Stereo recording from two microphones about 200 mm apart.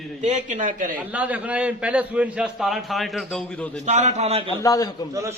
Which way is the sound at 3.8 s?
35° right (ahead or behind).